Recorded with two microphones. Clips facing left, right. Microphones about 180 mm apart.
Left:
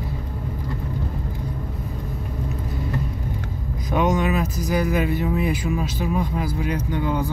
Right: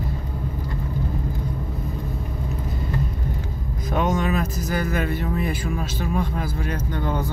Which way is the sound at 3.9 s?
15° left (ahead or behind).